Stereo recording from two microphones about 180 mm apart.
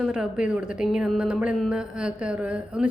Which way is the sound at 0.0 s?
5° right (ahead or behind).